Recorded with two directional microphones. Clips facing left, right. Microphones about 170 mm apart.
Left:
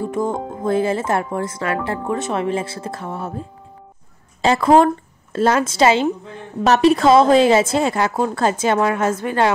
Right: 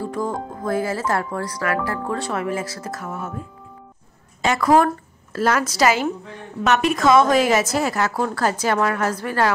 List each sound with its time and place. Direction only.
0.0 s a woman's voice: 20° left (ahead or behind)